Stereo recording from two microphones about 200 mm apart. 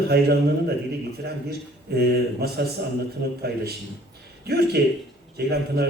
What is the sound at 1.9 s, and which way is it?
A man's voice, 55° right (ahead or behind).